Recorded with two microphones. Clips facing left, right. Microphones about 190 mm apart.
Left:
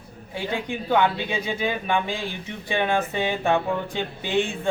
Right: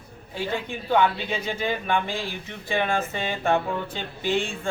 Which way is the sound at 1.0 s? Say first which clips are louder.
Left 1 dB; 15° left (ahead or behind).